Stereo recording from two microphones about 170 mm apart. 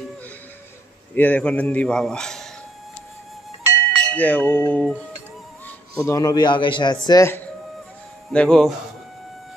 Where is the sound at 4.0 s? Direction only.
10° left (ahead or behind).